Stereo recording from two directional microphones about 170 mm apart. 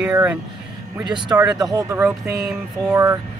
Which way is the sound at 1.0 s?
25° right (ahead or behind).